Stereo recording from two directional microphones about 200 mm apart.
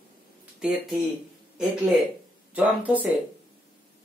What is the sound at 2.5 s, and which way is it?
Speech, 10° right (ahead or behind).